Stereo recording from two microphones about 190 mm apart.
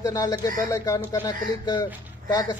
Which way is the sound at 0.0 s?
20° left (ahead or behind).